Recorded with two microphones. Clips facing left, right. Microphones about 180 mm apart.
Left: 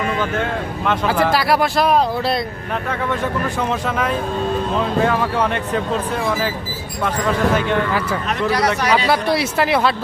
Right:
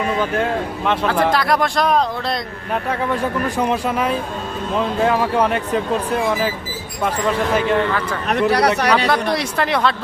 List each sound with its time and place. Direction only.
0.9 s speech: 5° left (ahead or behind)
3.6 s speech: 10° right (ahead or behind)
8.3 s speech: 60° right (ahead or behind)
9.0 s speech: 5° left (ahead or behind)